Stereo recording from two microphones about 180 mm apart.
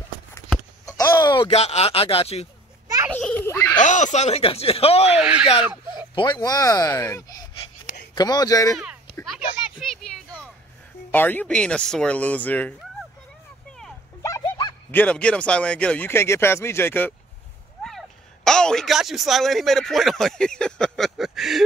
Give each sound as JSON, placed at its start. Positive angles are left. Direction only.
{"t": 0.8, "sound": "a sound", "side_deg": 20}
{"t": 1.5, "sound": "speech", "side_deg": 35}
{"t": 3.1, "sound": "a sound", "side_deg": 10}
{"t": 3.8, "sound": "speech", "side_deg": 40}
{"t": 5.2, "sound": "speech", "side_deg": -5}
{"t": 6.1, "sound": "speech", "side_deg": 20}
{"t": 9.1, "sound": "a sound", "side_deg": 0}
{"t": 11.1, "sound": "speech", "side_deg": 10}
{"t": 14.2, "sound": "bow-wow", "side_deg": 20}
{"t": 14.9, "sound": "speech", "side_deg": 10}